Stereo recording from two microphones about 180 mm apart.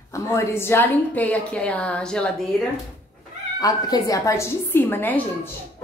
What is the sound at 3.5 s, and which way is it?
A woman's voice, 20° left (ahead or behind).